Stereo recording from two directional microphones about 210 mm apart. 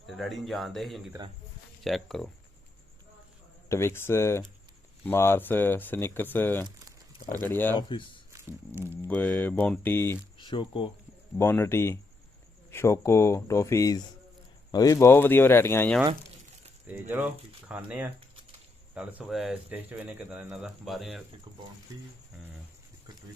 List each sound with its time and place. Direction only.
0.0 s speech: centre (ahead or behind)
3.7 s speech: 10° left (ahead or behind)
7.8 s speech: 25° left (ahead or behind)
8.3 s music: 15° right (ahead or behind)
9.0 s speech: 10° left (ahead or behind)
10.3 s speech: 25° left (ahead or behind)
11.3 s speech: 10° left (ahead or behind)
16.8 s speech: 10° right (ahead or behind)